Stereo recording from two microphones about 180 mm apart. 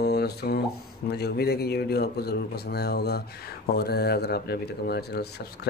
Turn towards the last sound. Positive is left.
turn(degrees=65)  # may be behind; listen again after turning